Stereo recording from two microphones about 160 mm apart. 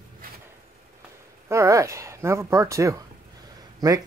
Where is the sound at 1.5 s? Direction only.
20° right (ahead or behind).